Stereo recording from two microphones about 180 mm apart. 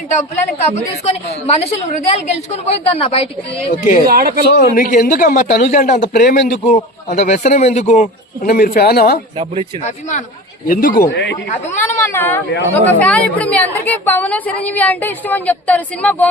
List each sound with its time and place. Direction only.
0.7 s a woman's voice: 35° left (ahead or behind)
4.0 s speech: 55° right (ahead or behind)
4.5 s a man's voice: 50° left (ahead or behind)
8.4 s speech: 55° left (ahead or behind)
9.8 s a woman's voice: 40° left (ahead or behind)
11.1 s speech: 80° left
11.8 s a woman's voice: 15° left (ahead or behind)